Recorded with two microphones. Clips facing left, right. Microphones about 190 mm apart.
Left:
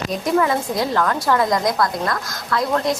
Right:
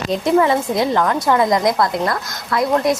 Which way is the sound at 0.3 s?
25° right (ahead or behind).